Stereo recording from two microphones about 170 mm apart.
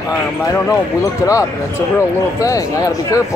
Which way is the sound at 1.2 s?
20° left (ahead or behind).